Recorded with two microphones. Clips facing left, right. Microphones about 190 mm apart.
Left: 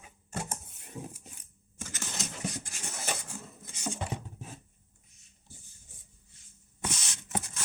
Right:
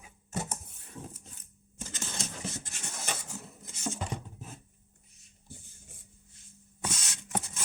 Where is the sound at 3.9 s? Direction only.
Centre (ahead or behind).